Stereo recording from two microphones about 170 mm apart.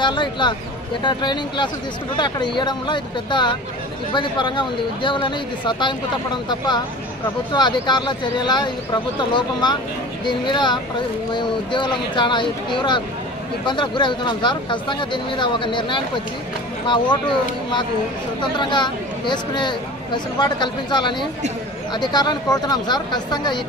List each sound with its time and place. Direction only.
0.0 s speech: 25° left (ahead or behind)
7.5 s speech: 25° left (ahead or behind)